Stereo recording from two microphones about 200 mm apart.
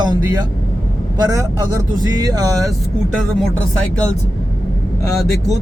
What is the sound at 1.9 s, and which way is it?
Speech, 20° right (ahead or behind).